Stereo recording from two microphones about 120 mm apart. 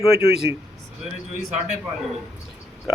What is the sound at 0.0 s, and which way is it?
Speech, 50° left (ahead or behind).